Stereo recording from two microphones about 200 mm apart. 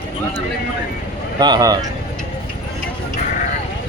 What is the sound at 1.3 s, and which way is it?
Speech, 20° right (ahead or behind).